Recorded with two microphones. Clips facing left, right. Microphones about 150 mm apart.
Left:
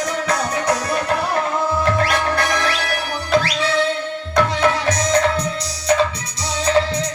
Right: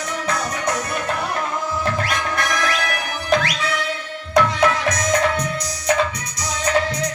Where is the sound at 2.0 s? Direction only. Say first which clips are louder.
Left 4 dB; 30° left (ahead or behind).